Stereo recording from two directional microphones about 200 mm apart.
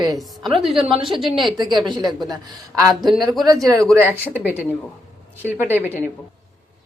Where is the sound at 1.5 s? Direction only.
20° right (ahead or behind).